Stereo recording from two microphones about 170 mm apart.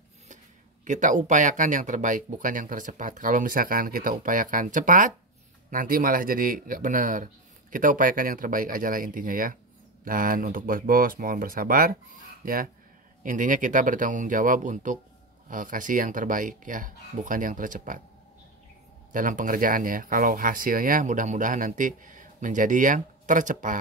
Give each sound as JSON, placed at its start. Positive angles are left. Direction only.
{"t": 0.8, "sound": "speech", "side_deg": -45}
{"t": 13.2, "sound": "speech", "side_deg": -50}
{"t": 19.1, "sound": "speech", "side_deg": -50}